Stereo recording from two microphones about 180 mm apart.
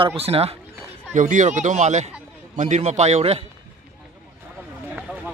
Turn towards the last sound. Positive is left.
turn(degrees=-35)  # may be behind; listen again after turning